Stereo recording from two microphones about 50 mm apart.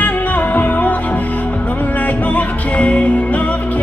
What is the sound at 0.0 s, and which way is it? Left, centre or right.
Music, left.